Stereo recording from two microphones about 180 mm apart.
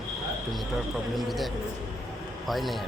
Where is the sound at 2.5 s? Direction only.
Centre (ahead or behind).